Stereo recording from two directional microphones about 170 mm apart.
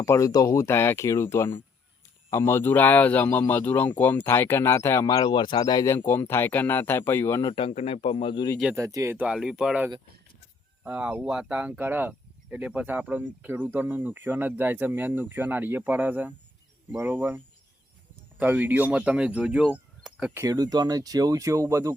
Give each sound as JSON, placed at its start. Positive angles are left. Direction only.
{"t": 0.0, "sound": "speech", "side_deg": 20}
{"t": 7.7, "sound": "speech", "side_deg": 35}
{"t": 8.7, "sound": "speech", "side_deg": -20}
{"t": 20.0, "sound": "a sound", "side_deg": -5}
{"t": 20.4, "sound": "speech", "side_deg": -25}